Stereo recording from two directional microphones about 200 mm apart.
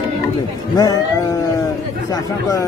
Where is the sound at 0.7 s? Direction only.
20° left (ahead or behind).